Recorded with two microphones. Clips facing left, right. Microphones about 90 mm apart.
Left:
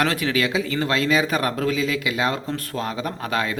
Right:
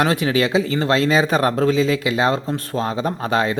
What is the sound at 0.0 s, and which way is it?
Speech, 25° right (ahead or behind).